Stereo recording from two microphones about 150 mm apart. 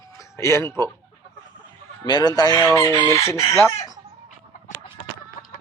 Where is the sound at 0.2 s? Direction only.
20° left (ahead or behind).